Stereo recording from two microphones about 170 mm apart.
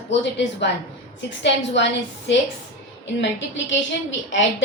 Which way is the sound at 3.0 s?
90° left.